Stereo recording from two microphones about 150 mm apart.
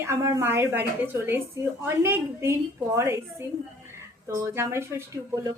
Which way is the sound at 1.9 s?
15° right (ahead or behind).